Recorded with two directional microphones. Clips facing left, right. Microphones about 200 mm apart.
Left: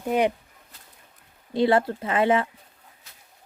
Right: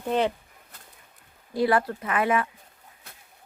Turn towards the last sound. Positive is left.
turn(degrees=-55)  # may be behind; listen again after turning